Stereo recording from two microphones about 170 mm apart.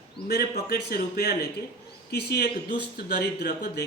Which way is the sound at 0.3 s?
70° left (ahead or behind).